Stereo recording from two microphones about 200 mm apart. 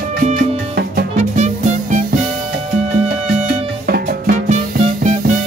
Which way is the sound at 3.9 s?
45° right (ahead or behind).